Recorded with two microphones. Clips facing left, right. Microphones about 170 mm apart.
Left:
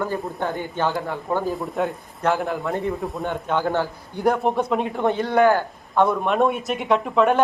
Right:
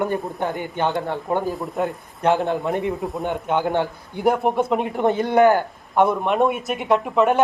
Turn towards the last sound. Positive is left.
turn(degrees=-10)  # may be behind; listen again after turning